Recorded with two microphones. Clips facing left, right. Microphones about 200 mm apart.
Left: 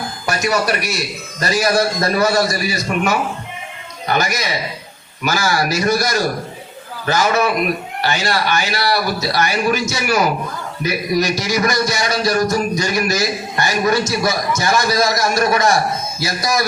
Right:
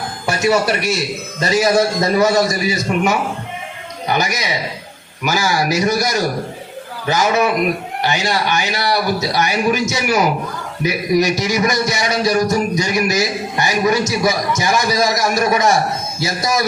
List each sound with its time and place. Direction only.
0.3 s a man's voice: 25° right (ahead or behind)